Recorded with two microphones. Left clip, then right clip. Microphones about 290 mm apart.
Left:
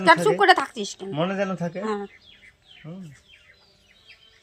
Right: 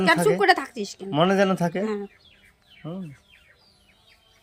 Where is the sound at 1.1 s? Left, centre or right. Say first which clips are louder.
Right 6 dB; right.